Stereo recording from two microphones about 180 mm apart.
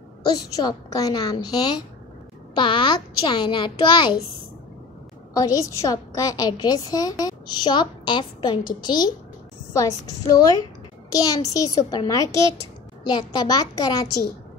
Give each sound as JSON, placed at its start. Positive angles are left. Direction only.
{"t": 0.2, "sound": "a woman's voice", "side_deg": 20}
{"t": 5.3, "sound": "a woman's voice", "side_deg": 20}